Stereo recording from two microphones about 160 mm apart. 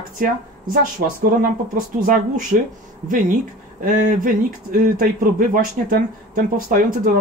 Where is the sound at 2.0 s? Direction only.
60° right (ahead or behind).